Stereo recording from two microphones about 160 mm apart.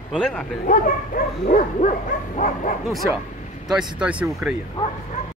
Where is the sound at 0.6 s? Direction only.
55° left (ahead or behind).